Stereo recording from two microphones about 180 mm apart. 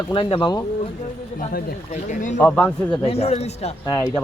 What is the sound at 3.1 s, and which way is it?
Speech, 35° left (ahead or behind).